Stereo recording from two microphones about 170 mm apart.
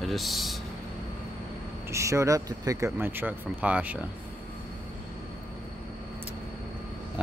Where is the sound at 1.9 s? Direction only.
15° right (ahead or behind).